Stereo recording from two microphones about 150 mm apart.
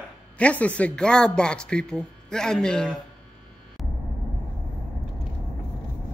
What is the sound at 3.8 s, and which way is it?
Vehicle, centre (ahead or behind).